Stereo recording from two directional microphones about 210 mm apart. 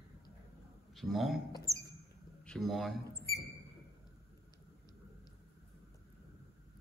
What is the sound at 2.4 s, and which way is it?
Speech, centre (ahead or behind).